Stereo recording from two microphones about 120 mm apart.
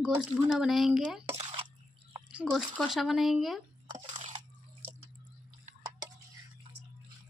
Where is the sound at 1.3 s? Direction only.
60° right (ahead or behind).